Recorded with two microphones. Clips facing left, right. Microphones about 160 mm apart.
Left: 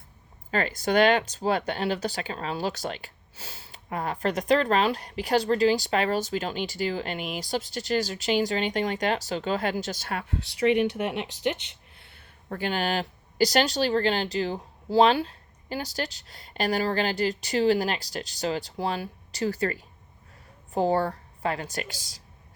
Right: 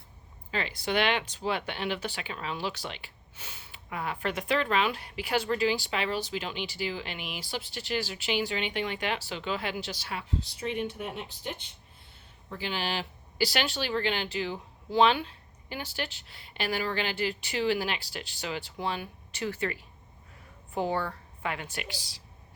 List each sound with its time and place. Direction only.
0.5 s speech: 45° left (ahead or behind)